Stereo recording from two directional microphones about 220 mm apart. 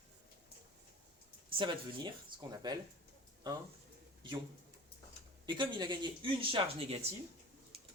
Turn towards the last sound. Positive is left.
turn(degrees=-25)  # may be behind; listen again after turning